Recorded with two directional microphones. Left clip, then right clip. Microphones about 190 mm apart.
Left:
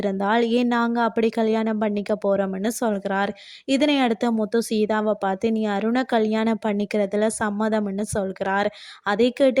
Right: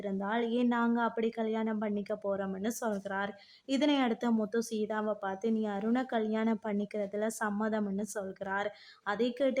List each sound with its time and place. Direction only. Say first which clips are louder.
0.0 s speech: left 12 dB; 45° left (ahead or behind)